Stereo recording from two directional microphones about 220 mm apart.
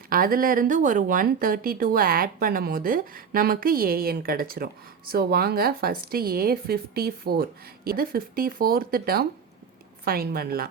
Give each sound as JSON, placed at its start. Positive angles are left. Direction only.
{"t": 0.1, "sound": "speech", "side_deg": -40}